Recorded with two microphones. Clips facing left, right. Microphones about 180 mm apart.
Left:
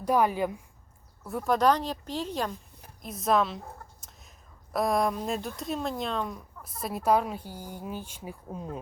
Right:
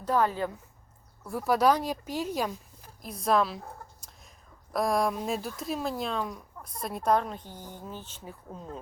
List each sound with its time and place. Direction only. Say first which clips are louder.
0.0 s a woman's voice: left 2 dB; 15° left (ahead or behind)
1.2 s speech: even; centre (ahead or behind)
3.0 s speech: even; centre (ahead or behind)
4.0 s chicken: even; centre (ahead or behind)
4.7 s speech: left 1 dB; centre (ahead or behind)